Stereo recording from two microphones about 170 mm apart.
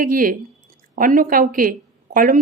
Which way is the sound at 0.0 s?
55° right (ahead or behind).